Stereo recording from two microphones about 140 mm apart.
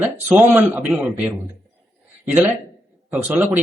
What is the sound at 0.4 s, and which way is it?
Speech, 10° right (ahead or behind).